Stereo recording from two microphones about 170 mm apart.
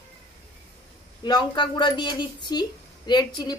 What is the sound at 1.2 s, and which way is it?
A woman's voice, 25° left (ahead or behind).